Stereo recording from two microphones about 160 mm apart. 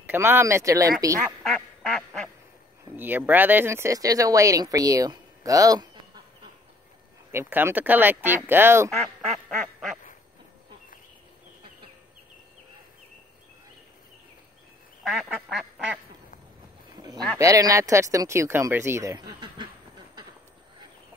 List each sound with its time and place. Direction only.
0.0 s speech: 15° right (ahead or behind)
1.4 s quack: centre (ahead or behind)
3.0 s speech: 10° right (ahead or behind)
7.3 s speech: 15° right (ahead or behind)
9.3 s quack: centre (ahead or behind)
15.0 s quack: centre (ahead or behind)
16.9 s a sound: 25° right (ahead or behind)
17.4 s speech: 20° right (ahead or behind)